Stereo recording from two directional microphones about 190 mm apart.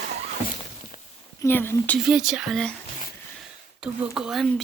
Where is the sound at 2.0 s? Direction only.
5° right (ahead or behind).